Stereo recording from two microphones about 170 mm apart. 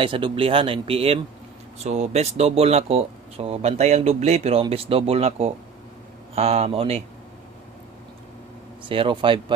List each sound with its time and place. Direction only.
0.0 s speech: 30° right (ahead or behind)
8.8 s speech: 30° right (ahead or behind)